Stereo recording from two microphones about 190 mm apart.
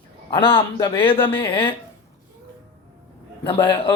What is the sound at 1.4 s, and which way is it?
Speech, 25° left (ahead or behind).